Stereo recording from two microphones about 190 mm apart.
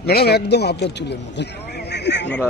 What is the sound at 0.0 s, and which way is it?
A man's voice, 55° left (ahead or behind).